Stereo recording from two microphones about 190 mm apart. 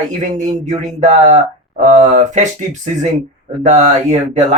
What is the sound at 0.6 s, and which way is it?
Speech, 40° right (ahead or behind).